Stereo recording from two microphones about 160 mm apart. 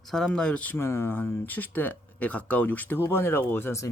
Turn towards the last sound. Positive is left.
turn(degrees=15)  # may be behind; listen again after turning